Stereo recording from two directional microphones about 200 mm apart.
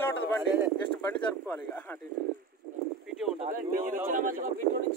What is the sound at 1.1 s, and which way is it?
Speech, 10° left (ahead or behind).